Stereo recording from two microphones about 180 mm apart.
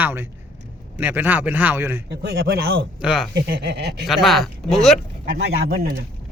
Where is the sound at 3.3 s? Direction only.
65° right (ahead or behind).